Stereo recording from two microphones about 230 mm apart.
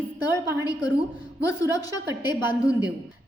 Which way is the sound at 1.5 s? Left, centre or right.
Centre.